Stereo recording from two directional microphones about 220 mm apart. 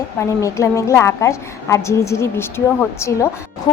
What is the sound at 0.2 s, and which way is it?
A woman's voice, 15° left (ahead or behind).